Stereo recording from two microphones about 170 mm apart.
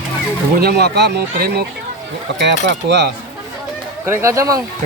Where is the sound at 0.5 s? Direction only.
70° right (ahead or behind).